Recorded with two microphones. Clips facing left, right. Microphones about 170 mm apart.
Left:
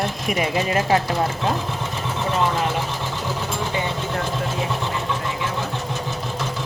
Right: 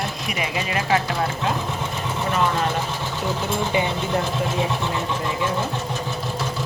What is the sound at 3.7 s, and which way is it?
Speech, 15° right (ahead or behind).